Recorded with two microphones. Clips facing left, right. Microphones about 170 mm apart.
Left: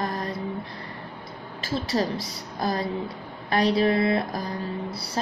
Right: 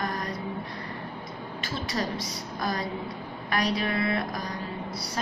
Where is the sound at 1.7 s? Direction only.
30° left (ahead or behind).